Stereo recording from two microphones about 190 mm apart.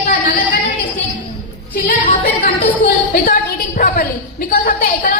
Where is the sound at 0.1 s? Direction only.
45° left (ahead or behind).